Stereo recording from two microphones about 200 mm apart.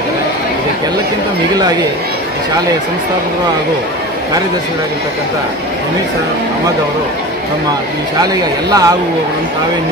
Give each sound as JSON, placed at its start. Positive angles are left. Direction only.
{"t": 8.2, "sound": "speech", "side_deg": -20}